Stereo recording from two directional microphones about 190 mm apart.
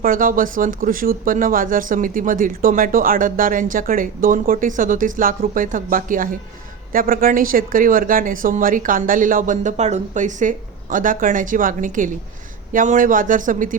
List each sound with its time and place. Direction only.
0.0 s speech: 45° right (ahead or behind)